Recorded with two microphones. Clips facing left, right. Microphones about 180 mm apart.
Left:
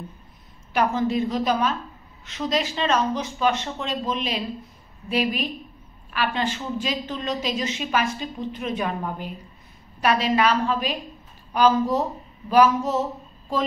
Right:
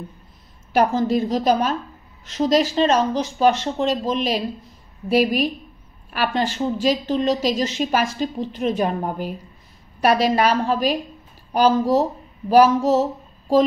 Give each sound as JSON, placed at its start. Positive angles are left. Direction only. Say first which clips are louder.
{"t": 0.7, "sound": "a woman's voice", "louder": "right 4 dB", "side_deg": -40}